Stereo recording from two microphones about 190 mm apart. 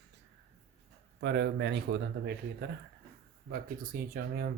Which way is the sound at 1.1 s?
65° right (ahead or behind).